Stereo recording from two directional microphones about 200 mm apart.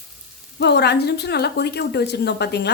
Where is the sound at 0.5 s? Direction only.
55° left (ahead or behind).